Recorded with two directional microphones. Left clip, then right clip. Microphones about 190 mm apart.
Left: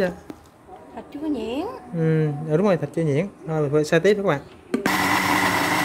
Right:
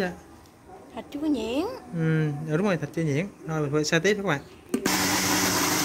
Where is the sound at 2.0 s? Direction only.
10° left (ahead or behind).